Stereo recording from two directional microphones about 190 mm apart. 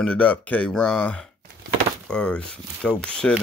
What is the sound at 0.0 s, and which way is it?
Speech, 5° left (ahead or behind).